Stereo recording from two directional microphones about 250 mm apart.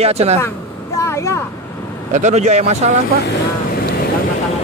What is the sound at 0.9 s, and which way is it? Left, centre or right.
Vehicle, centre.